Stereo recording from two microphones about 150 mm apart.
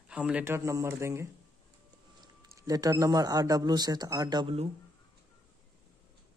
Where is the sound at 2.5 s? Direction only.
25° right (ahead or behind).